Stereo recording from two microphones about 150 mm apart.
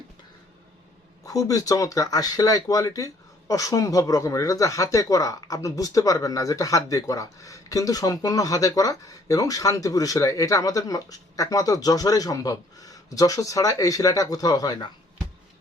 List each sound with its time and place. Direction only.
1.2 s speech: 20° left (ahead or behind)